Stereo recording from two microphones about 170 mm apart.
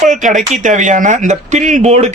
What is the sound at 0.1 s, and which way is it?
Speech, 50° right (ahead or behind).